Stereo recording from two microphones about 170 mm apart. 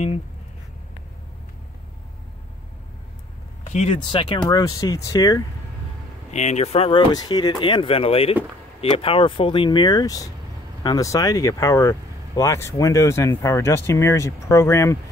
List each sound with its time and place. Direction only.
3.6 s speech: 40° left (ahead or behind); by 5.4 s 20° left (ahead or behind)
6.3 s speech: 40° left (ahead or behind); by 15.0 s 15° left (ahead or behind)